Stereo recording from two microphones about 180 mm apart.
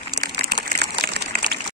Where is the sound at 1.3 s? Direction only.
55° right (ahead or behind).